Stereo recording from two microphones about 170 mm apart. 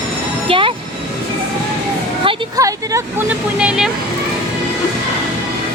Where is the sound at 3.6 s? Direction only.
5° right (ahead or behind).